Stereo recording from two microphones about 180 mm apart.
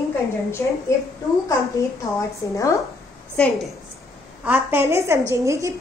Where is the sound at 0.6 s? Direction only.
15° left (ahead or behind).